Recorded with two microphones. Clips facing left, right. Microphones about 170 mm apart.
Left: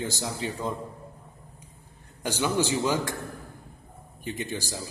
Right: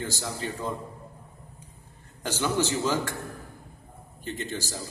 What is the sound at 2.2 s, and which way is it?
Speech, 15° left (ahead or behind).